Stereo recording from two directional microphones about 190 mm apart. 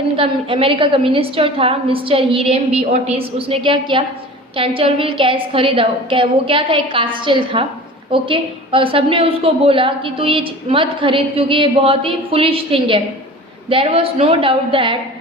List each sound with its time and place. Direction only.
0.2 s a woman's voice: 30° right (ahead or behind)